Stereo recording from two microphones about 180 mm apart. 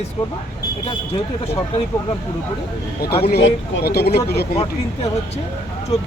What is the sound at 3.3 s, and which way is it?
Speech, 80° left.